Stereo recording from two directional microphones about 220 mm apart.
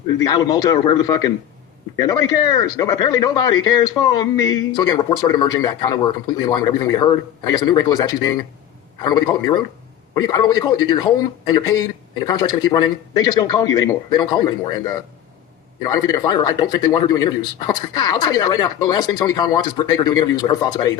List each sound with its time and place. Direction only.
0.3 s a man's voice: 20° left (ahead or behind)